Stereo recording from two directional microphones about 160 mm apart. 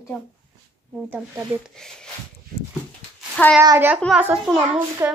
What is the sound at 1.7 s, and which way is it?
Speech, 5° left (ahead or behind).